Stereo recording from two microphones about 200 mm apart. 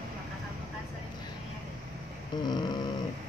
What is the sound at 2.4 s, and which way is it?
Speech, 20° left (ahead or behind).